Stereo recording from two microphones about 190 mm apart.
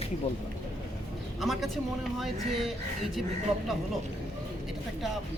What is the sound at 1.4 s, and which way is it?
Speech, centre (ahead or behind).